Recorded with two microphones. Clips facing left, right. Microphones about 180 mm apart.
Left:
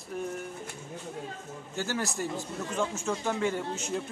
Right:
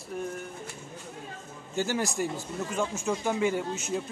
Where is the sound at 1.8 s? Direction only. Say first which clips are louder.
Right 4 dB; 15° right (ahead or behind).